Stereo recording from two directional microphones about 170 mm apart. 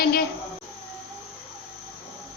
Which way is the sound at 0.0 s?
65° left (ahead or behind).